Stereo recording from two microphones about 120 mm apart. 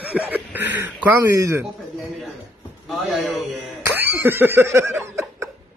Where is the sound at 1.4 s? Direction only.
25° right (ahead or behind).